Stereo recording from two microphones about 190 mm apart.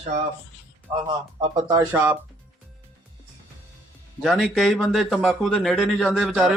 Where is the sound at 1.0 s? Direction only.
20° right (ahead or behind).